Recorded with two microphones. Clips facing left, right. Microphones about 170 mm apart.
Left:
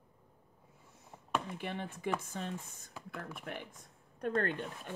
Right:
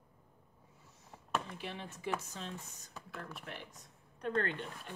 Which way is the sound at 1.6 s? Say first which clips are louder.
Left 4 dB; 55° left (ahead or behind).